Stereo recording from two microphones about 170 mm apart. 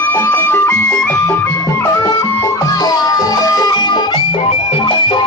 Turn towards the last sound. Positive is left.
turn(degrees=30)  # may be behind; listen again after turning